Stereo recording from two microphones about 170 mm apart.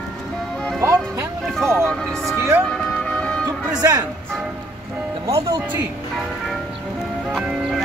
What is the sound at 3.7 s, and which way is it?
Speech, 20° right (ahead or behind).